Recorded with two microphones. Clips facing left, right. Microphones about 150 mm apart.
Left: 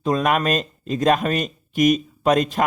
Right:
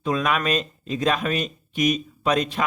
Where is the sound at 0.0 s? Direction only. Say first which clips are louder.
Left 3 dB; 40° left (ahead or behind).